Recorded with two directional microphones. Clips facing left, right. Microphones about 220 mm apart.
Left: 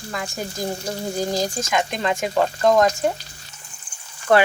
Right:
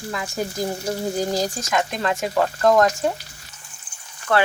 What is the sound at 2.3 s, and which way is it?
Speech, 20° left (ahead or behind).